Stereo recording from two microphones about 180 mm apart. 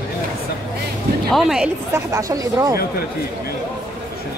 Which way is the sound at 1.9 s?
15° right (ahead or behind).